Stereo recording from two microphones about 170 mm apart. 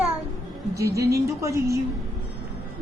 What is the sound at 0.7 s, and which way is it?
A woman's voice, 20° right (ahead or behind).